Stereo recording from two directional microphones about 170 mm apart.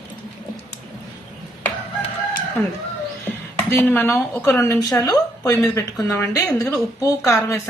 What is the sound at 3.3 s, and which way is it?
A woman's voice, 10° left (ahead or behind).